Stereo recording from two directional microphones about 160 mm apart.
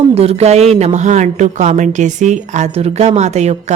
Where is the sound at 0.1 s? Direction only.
40° right (ahead or behind).